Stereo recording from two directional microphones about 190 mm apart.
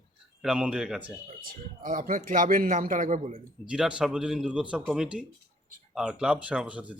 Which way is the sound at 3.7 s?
5° right (ahead or behind).